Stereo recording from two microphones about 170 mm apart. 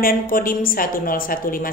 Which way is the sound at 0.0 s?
55° left (ahead or behind).